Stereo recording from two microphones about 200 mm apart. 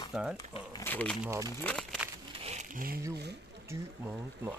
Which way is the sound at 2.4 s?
35° right (ahead or behind).